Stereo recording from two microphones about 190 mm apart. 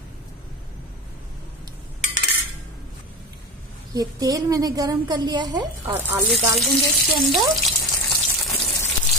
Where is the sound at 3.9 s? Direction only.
20° right (ahead or behind).